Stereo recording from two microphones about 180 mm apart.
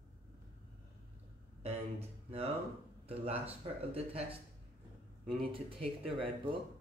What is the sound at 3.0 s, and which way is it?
A man's voice, 35° right (ahead or behind).